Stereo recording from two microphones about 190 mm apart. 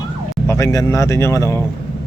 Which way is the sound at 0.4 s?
15° left (ahead or behind).